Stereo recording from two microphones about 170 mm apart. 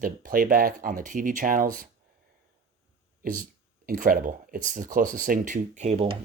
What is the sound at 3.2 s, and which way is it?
Speech, 55° right (ahead or behind).